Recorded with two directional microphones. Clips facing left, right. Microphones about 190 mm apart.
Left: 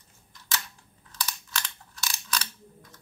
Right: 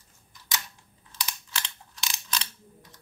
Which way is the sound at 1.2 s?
20° right (ahead or behind).